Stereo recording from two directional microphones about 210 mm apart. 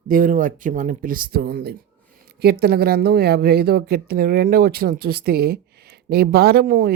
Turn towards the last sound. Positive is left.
turn(degrees=-45)  # may be behind; listen again after turning